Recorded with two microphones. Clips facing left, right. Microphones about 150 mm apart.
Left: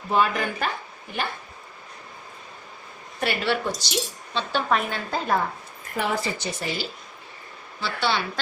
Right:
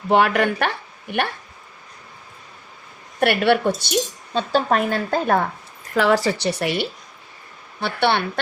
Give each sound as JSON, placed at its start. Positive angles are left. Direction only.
{"t": 0.1, "sound": "speech", "side_deg": -70}
{"t": 3.2, "sound": "a woman's voice", "side_deg": -60}
{"t": 5.9, "sound": "a woman's voice", "side_deg": -90}
{"t": 7.8, "sound": "a woman's voice", "side_deg": -60}